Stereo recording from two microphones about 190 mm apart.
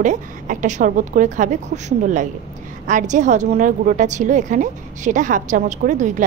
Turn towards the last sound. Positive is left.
turn(degrees=-40)  # may be behind; listen again after turning